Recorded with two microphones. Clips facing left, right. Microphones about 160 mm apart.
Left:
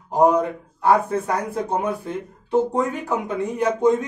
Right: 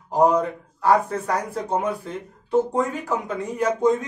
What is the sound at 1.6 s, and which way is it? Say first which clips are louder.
Speech: left 1 dB; 20° left (ahead or behind).